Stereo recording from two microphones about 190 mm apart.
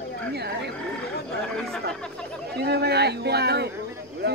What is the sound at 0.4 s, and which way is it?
Speech, 60° right (ahead or behind).